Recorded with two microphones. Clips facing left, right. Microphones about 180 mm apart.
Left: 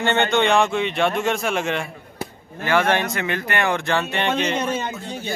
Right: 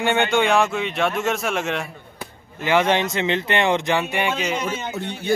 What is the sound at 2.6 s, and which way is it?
Speech, 20° right (ahead or behind).